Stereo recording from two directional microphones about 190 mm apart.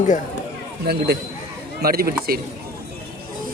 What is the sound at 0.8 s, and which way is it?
A man's voice, 55° right (ahead or behind).